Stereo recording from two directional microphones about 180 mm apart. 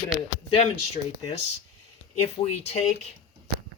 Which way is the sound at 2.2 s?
35° left (ahead or behind).